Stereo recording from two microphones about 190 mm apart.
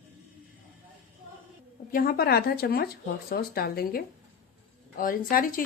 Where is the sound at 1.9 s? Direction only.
50° left (ahead or behind).